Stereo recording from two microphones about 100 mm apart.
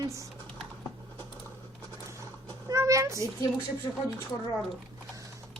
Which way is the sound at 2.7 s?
30° right (ahead or behind).